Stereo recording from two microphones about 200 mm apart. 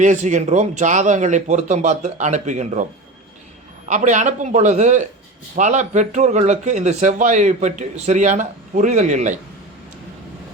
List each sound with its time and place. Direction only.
0.0 s speech: 35° right (ahead or behind)
3.8 s speech: 40° right (ahead or behind)